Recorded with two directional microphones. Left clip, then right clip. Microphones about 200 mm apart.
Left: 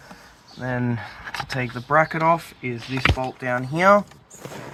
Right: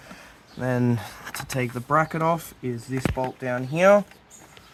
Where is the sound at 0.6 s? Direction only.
60° right (ahead or behind).